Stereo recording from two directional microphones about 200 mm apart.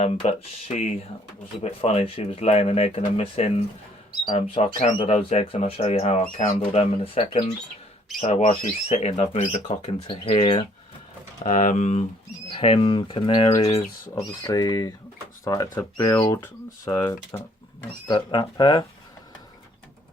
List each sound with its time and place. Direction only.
0.0 s speech: 35° left (ahead or behind)
6.6 s speech: 30° left (ahead or behind)
11.4 s speech: 40° left (ahead or behind)
14.2 s speech: 15° left (ahead or behind)